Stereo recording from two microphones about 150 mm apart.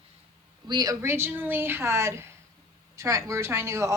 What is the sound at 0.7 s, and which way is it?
A woman's voice, 25° right (ahead or behind).